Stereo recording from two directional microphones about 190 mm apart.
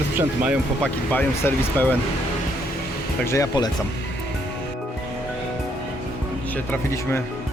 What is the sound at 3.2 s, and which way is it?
Speech, 15° left (ahead or behind).